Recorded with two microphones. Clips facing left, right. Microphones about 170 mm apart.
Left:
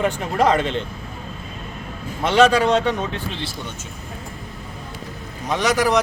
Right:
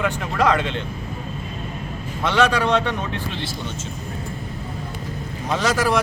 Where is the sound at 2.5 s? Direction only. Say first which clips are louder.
Left 3 dB; 45° left (ahead or behind).